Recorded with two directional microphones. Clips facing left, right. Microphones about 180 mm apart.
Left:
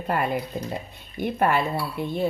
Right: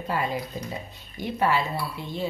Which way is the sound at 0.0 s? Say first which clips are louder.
Left 3 dB; 55° left (ahead or behind).